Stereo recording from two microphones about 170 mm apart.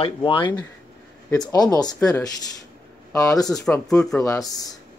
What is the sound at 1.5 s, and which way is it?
Speech, 25° left (ahead or behind).